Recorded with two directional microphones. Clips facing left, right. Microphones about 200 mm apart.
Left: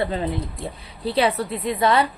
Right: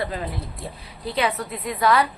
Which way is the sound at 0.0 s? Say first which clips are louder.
Left 4 dB; 25° left (ahead or behind).